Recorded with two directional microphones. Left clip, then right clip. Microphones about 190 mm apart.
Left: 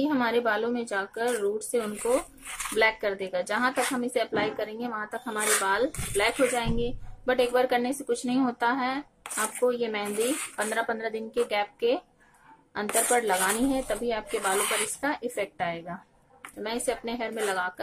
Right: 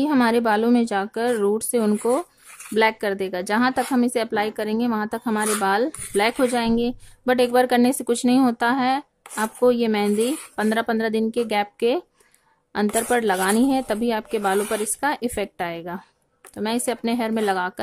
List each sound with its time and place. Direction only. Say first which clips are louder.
0.0 s a woman's voice: right 6 dB; 50° right (ahead or behind)